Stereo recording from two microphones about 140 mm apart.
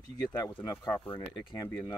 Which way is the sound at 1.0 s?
40° left (ahead or behind).